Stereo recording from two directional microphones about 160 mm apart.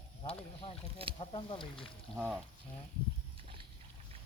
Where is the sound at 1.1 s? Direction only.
35° left (ahead or behind).